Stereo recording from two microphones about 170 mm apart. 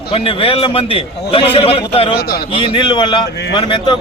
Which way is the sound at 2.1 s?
65° left (ahead or behind).